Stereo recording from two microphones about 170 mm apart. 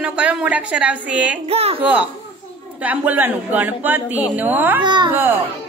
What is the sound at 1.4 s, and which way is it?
Speech, 35° right (ahead or behind).